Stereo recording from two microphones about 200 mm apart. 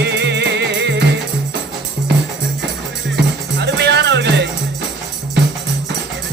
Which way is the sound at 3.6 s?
60° right (ahead or behind).